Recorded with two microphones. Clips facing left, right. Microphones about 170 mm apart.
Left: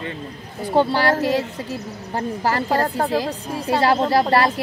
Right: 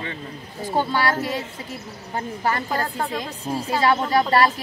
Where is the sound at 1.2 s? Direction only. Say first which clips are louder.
Left 6 dB; 80° left.